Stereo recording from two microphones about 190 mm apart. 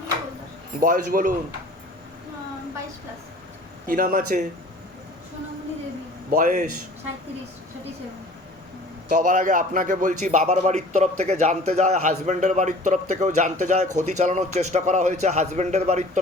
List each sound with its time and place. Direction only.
0.8 s a man's voice: 45° right (ahead or behind)
3.8 s a man's voice: 50° right (ahead or behind)
6.3 s a man's voice: 40° right (ahead or behind)
9.0 s a man's voice: 45° right (ahead or behind)